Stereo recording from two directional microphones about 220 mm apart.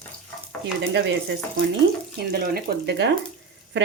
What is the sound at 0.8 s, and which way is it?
Speech, 55° right (ahead or behind).